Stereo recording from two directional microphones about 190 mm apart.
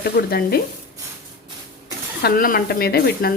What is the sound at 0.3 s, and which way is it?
Speech, 55° left (ahead or behind).